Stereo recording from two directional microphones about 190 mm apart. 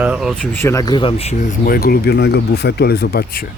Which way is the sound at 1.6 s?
50° left (ahead or behind).